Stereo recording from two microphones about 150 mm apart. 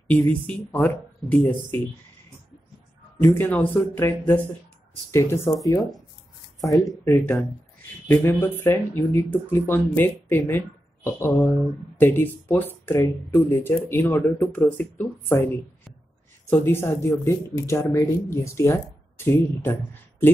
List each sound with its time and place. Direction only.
0.1 s speech: 10° left (ahead or behind)
3.3 s speech: 15° left (ahead or behind)
5.1 s speech: 20° left (ahead or behind)
5.8 s speech: centre (ahead or behind)
6.6 s speech: 20° left (ahead or behind)
8.1 s speech: 10° left (ahead or behind)